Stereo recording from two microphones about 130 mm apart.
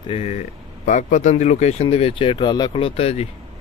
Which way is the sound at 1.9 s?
45° left (ahead or behind).